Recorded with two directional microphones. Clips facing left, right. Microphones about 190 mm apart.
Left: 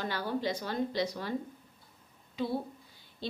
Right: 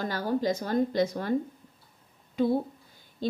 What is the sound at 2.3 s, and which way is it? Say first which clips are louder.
A woman's voice: right 8 dB; 50° right (ahead or behind).